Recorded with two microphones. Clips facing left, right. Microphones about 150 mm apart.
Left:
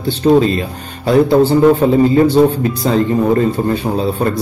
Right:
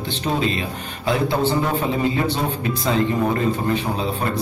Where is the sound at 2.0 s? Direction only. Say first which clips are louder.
Left 12 dB; 40° left (ahead or behind).